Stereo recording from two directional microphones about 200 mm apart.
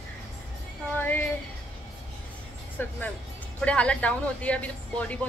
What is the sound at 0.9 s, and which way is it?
Speech, 10° left (ahead or behind).